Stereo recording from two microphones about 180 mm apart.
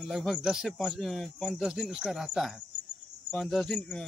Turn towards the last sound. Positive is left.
turn(degrees=5)  # may be behind; listen again after turning